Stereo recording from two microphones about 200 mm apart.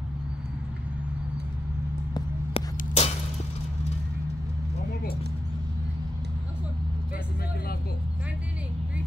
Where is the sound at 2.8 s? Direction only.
30° left (ahead or behind).